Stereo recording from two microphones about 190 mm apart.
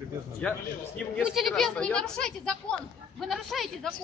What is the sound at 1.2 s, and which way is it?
Speech, centre (ahead or behind).